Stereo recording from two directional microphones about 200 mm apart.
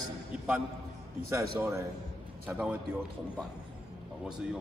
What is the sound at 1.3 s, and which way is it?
A man's voice, 15° right (ahead or behind).